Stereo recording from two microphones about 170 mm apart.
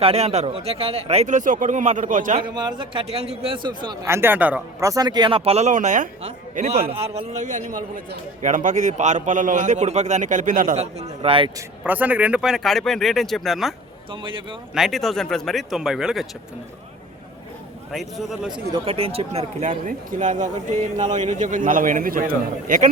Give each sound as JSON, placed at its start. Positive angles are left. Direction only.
{"t": 0.0, "sound": "speech", "side_deg": -35}
{"t": 2.6, "sound": "a man's voice", "side_deg": -25}
{"t": 4.0, "sound": "a man's voice", "side_deg": -15}
{"t": 4.9, "sound": "a man's voice", "side_deg": -25}
{"t": 11.8, "sound": "speech", "side_deg": -10}
{"t": 14.1, "sound": "a man's voice", "side_deg": -30}
{"t": 14.8, "sound": "speech", "side_deg": 0}
{"t": 17.9, "sound": "speech", "side_deg": 0}
{"t": 18.5, "sound": "a man's voice", "side_deg": -30}